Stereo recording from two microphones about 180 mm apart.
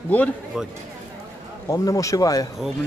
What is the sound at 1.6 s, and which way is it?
Speech, 20° left (ahead or behind).